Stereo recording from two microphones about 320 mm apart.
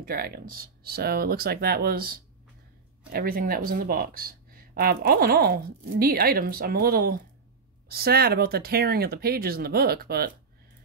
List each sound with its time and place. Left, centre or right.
0.0 s speech: right